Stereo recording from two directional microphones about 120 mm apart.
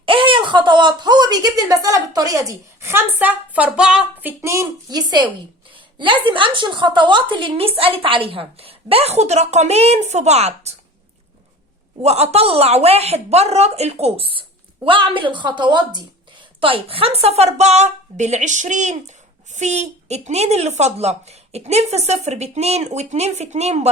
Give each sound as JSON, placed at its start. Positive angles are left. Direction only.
{"t": 0.0, "sound": "speech", "side_deg": -45}
{"t": 5.7, "sound": "a sound", "side_deg": -45}
{"t": 6.2, "sound": "a woman's voice", "side_deg": -45}
{"t": 12.0, "sound": "a woman's voice", "side_deg": -60}
{"t": 16.6, "sound": "a woman's voice", "side_deg": -50}